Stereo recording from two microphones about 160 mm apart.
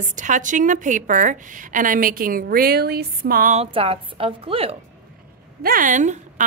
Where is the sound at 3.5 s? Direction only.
40° right (ahead or behind).